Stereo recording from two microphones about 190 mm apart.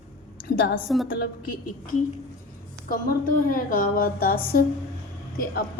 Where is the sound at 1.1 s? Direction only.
50° left (ahead or behind).